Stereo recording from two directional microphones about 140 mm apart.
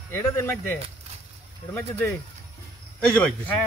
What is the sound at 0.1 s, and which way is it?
Speech, 15° left (ahead or behind).